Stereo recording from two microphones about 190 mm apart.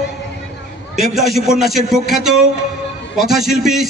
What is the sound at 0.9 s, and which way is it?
A man's voice, centre (ahead or behind).